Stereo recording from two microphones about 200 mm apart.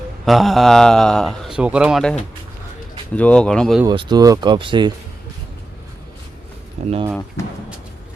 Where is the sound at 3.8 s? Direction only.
20° right (ahead or behind).